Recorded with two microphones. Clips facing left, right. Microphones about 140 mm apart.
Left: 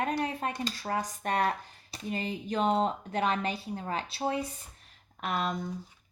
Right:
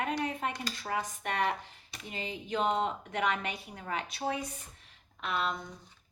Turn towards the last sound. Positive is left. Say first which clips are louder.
# left 2 dB
turn(degrees=45)  # may be behind; listen again after turning